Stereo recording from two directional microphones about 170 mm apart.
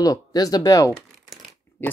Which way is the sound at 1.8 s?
15° left (ahead or behind).